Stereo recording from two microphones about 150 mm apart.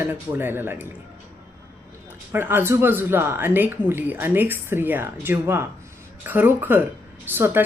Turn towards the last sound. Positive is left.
turn(degrees=-15)  # may be behind; listen again after turning